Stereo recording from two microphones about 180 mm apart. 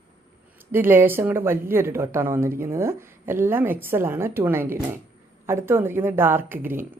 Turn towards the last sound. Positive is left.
turn(degrees=-10)  # may be behind; listen again after turning